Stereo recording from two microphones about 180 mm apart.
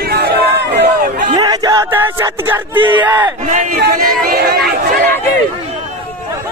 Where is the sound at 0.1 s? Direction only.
60° right (ahead or behind).